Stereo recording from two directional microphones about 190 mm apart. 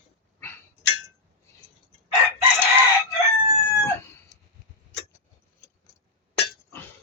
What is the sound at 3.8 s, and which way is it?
Cat, 15° left (ahead or behind).